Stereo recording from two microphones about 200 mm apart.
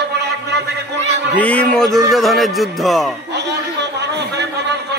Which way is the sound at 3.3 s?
60° right (ahead or behind).